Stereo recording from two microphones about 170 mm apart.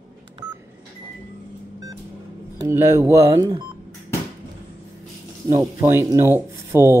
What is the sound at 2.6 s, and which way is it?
Speech, 15° right (ahead or behind).